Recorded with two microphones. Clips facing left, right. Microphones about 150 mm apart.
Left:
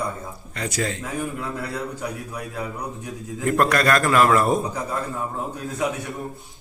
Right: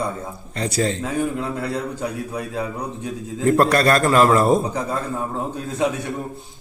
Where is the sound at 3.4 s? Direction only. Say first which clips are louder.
Right 4 dB; 30° right (ahead or behind).